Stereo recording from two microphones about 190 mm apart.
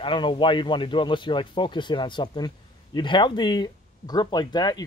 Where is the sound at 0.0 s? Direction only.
25° left (ahead or behind).